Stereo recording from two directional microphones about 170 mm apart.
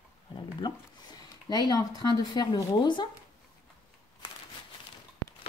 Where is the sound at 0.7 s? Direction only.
25° left (ahead or behind).